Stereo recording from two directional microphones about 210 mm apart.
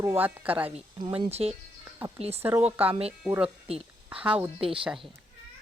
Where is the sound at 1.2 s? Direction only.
30° right (ahead or behind).